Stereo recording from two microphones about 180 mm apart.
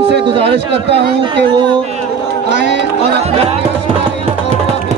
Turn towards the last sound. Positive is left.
turn(degrees=-35)  # may be behind; listen again after turning